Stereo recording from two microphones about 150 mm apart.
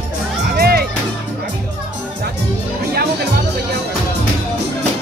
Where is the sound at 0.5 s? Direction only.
90° right.